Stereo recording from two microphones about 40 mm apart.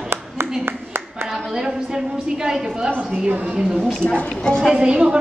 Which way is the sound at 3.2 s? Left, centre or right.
Right.